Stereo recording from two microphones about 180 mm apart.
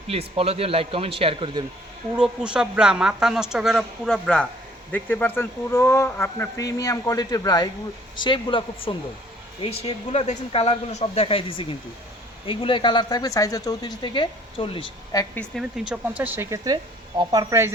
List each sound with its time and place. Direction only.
0.1 s speech: 35° right (ahead or behind)
2.1 s a woman's voice: 5° right (ahead or behind); by 15.3 s 25° left (ahead or behind)
15.4 s speech: centre (ahead or behind); by 17.7 s 20° right (ahead or behind)